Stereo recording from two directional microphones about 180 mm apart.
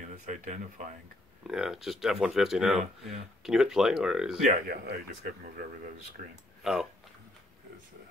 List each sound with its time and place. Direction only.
0.3 s speech: 40° right (ahead or behind)
1.5 s speech: 5° right (ahead or behind)
4.5 s speech: 55° right (ahead or behind)
6.6 s speech: centre (ahead or behind)